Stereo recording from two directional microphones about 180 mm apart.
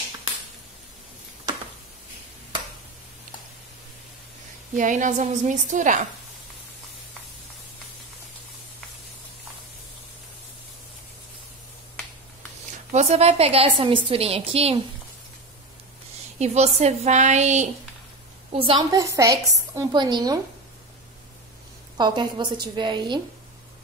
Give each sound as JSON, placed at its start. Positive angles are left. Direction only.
{"t": 4.7, "sound": "a woman's voice", "side_deg": -45}
{"t": 12.9, "sound": "a woman's voice", "side_deg": -35}
{"t": 16.3, "sound": "a woman's voice", "side_deg": -40}
{"t": 18.5, "sound": "a woman's voice", "side_deg": -30}
{"t": 21.9, "sound": "a woman's voice", "side_deg": -25}